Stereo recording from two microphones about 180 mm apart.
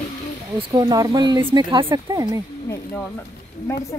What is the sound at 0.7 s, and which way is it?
Speech, 20° right (ahead or behind).